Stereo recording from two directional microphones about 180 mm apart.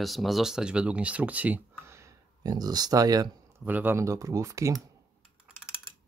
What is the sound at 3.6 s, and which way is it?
Speech, 10° right (ahead or behind).